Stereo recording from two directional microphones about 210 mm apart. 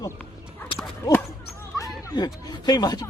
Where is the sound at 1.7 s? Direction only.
15° left (ahead or behind).